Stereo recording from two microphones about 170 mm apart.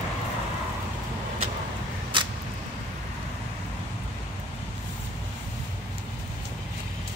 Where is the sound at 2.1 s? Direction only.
30° right (ahead or behind).